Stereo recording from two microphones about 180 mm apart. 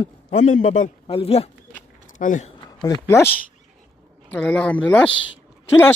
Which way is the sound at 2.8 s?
20° left (ahead or behind).